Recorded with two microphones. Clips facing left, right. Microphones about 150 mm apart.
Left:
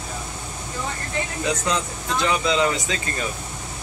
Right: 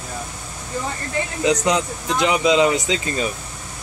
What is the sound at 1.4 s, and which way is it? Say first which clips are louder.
Speech: right 7 dB; 20° right (ahead or behind).